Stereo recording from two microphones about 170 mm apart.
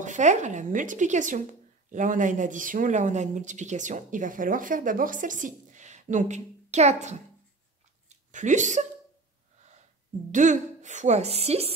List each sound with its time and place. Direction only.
0.0 s speech: 45° right (ahead or behind)
10.3 s speech: 45° right (ahead or behind)